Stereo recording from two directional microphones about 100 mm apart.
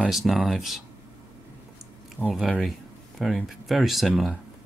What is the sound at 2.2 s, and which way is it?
Speech, centre (ahead or behind).